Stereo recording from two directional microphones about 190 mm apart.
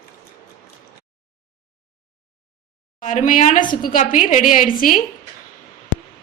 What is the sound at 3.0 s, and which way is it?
A woman's voice, 40° left (ahead or behind).